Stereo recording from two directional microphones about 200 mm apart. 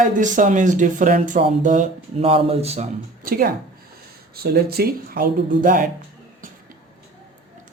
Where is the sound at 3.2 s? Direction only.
45° right (ahead or behind).